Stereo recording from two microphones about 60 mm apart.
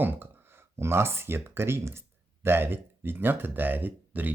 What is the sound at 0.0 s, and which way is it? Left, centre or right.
Speech, right.